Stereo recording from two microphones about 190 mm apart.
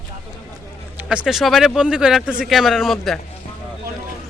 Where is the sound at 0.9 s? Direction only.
5° right (ahead or behind).